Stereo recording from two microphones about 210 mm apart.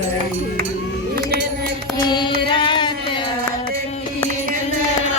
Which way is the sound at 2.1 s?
20° left (ahead or behind).